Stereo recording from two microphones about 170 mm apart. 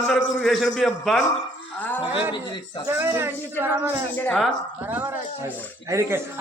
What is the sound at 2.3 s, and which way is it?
Speech, 25° left (ahead or behind).